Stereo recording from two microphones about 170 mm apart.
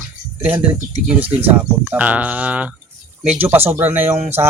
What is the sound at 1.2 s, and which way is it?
Speech, 10° right (ahead or behind).